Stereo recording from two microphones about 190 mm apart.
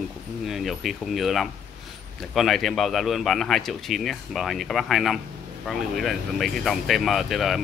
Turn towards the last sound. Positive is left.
turn(degrees=0)  # may be behind; listen again after turning